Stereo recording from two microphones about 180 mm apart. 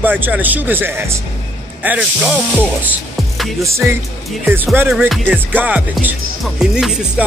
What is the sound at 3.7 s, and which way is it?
Music, 15° right (ahead or behind).